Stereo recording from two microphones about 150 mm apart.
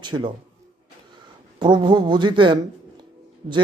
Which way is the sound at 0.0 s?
30° right (ahead or behind).